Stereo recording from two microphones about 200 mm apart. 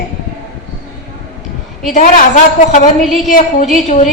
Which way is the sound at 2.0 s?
40° left (ahead or behind).